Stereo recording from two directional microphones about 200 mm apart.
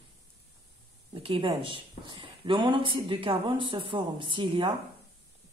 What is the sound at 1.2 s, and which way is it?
A woman's voice, 25° right (ahead or behind).